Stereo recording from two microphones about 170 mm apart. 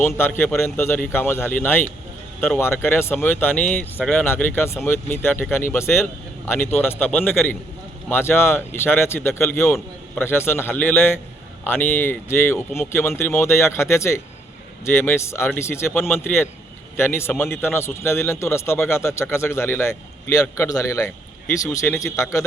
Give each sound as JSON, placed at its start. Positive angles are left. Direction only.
{"t": 0.0, "sound": "speech", "side_deg": 15}